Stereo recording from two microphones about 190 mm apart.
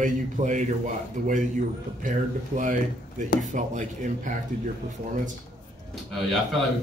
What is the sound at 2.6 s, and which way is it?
A man's voice, 40° right (ahead or behind).